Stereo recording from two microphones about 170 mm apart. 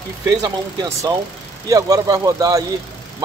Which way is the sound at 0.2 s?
20° right (ahead or behind).